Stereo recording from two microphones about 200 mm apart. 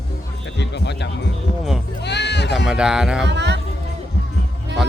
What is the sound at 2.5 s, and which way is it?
Speech, 5° right (ahead or behind).